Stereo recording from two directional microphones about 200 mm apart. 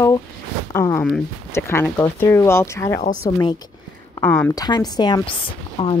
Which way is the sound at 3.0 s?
35° left (ahead or behind).